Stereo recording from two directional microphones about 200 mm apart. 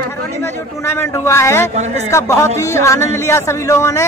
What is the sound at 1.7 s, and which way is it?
Speech, 35° right (ahead or behind).